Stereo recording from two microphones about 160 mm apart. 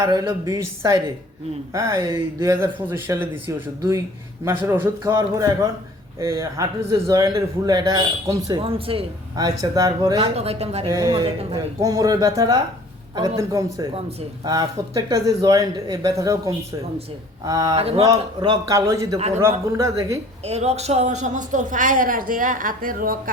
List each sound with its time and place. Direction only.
0.0 s a man's voice: 25° right (ahead or behind)
4.4 s a man's voice: 15° right (ahead or behind); by 9.0 s 35° right (ahead or behind)
9.3 s a man's voice: 25° right (ahead or behind)
10.2 s speech: 40° right (ahead or behind)
10.9 s a man's voice: 25° right (ahead or behind)
17.7 s speech: 35° right (ahead or behind)
18.0 s a man's voice: 25° right (ahead or behind)
20.4 s a woman's voice: 40° right (ahead or behind); by 23.3 s 60° right (ahead or behind)